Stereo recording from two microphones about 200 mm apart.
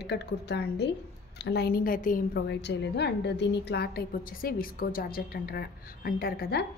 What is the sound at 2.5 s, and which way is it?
A woman's voice, 60° left (ahead or behind).